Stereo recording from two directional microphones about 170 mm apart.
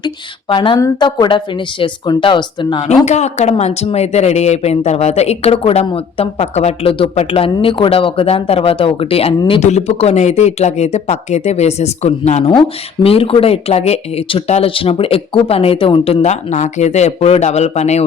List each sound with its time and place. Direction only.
0.0 s speech: 25° left (ahead or behind)
2.9 s speech: 40° left (ahead or behind)